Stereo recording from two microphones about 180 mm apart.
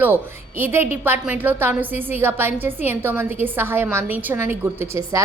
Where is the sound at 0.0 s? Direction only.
10° right (ahead or behind).